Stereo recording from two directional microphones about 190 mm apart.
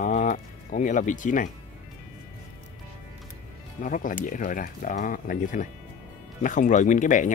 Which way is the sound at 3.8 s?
45° left (ahead or behind).